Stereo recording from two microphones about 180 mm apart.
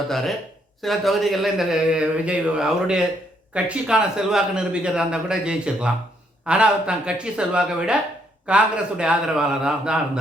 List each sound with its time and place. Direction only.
0.8 s a man's voice: centre (ahead or behind)